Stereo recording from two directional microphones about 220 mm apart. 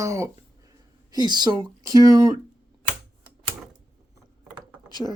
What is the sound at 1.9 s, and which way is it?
Speech, 15° right (ahead or behind).